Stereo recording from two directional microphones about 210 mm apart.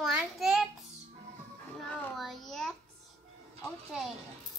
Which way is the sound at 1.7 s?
5° left (ahead or behind).